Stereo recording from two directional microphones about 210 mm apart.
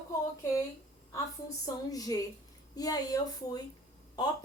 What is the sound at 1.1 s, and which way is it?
A woman's voice, 15° left (ahead or behind).